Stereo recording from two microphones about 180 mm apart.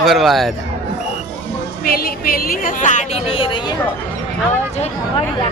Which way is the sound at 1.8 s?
55° left (ahead or behind).